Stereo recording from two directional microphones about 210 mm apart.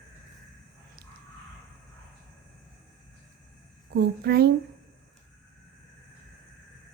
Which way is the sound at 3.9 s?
50° right (ahead or behind).